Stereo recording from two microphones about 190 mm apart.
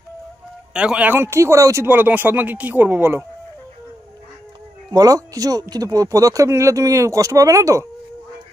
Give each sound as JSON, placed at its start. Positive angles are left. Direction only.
{"t": 0.7, "sound": "speech", "side_deg": -5}
{"t": 4.9, "sound": "speech", "side_deg": -20}